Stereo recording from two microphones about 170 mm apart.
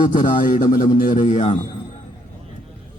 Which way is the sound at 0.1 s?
50° left (ahead or behind).